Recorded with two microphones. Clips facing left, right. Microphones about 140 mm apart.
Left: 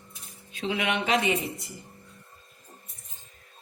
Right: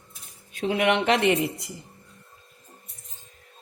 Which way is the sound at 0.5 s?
55° right (ahead or behind).